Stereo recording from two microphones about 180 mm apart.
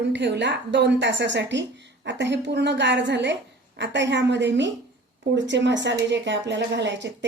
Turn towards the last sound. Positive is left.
turn(degrees=-80)